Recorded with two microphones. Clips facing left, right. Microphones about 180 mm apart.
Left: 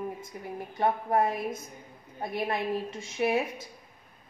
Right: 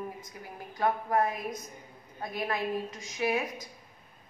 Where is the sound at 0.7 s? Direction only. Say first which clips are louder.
Left 1 dB; 25° left (ahead or behind).